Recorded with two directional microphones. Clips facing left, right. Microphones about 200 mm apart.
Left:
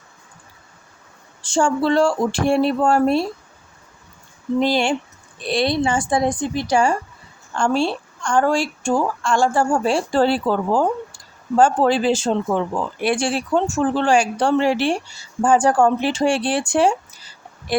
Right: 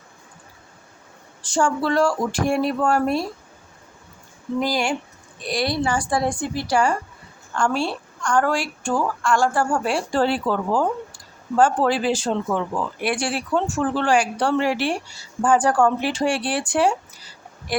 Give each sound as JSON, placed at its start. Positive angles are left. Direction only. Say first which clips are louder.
{"t": 1.4, "sound": "speech", "louder": "left 3 dB", "side_deg": 25}
{"t": 4.6, "sound": "speech", "louder": "left 4 dB", "side_deg": 25}
{"t": 17.7, "sound": "a sound", "louder": "left 4 dB", "side_deg": 25}